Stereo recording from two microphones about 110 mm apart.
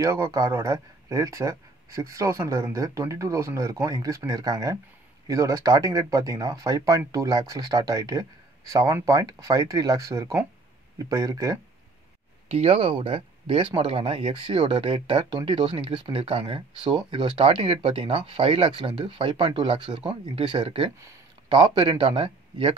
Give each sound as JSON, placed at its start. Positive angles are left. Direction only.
{"t": 0.0, "sound": "speech", "side_deg": -25}
{"t": 12.5, "sound": "speech", "side_deg": -60}